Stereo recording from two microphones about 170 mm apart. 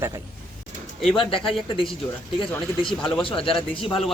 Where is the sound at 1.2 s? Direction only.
30° left (ahead or behind).